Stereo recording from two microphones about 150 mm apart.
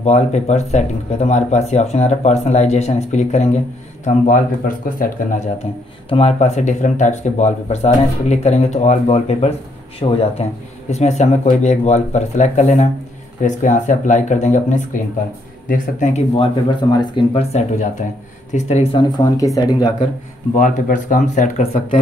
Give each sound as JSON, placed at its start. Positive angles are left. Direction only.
{"t": 0.0, "sound": "speech", "side_deg": 50}
{"t": 5.6, "sound": "speech", "side_deg": 40}
{"t": 16.9, "sound": "speech", "side_deg": 30}
{"t": 20.5, "sound": "speech", "side_deg": 65}